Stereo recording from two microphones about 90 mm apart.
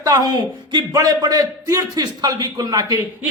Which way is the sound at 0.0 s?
50° right (ahead or behind).